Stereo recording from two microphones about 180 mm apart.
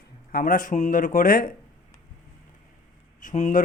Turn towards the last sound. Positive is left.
turn(degrees=45)  # may be behind; listen again after turning